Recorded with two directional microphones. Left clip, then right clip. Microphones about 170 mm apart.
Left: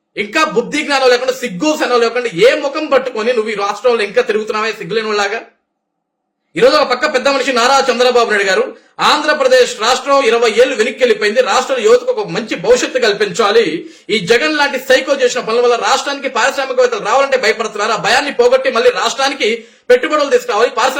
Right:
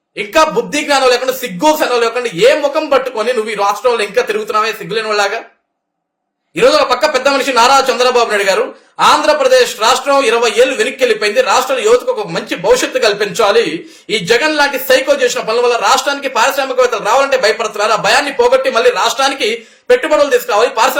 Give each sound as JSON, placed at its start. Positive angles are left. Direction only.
{"t": 0.2, "sound": "a man's voice", "side_deg": 10}
{"t": 6.6, "sound": "a man's voice", "side_deg": 5}